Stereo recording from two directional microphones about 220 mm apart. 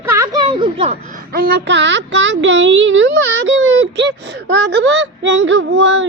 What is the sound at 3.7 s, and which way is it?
Child singing, 55° right (ahead or behind).